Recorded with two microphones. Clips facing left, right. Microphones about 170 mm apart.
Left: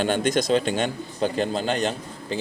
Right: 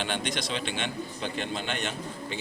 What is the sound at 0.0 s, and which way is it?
A man's voice, 45° left (ahead or behind).